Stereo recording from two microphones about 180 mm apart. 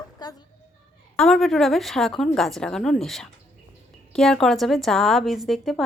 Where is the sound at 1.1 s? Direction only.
5° left (ahead or behind).